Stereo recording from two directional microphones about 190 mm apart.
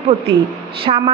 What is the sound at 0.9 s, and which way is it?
Speech, 30° right (ahead or behind).